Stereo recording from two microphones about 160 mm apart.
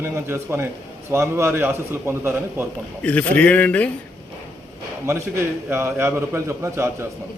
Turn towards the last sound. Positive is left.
turn(degrees=-15)  # may be behind; listen again after turning